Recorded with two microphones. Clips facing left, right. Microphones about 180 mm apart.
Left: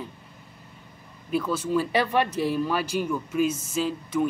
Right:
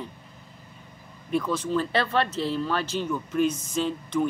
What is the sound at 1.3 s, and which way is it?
Speech, 5° left (ahead or behind).